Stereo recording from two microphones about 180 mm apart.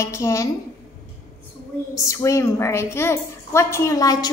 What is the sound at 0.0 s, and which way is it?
Speech, 15° left (ahead or behind).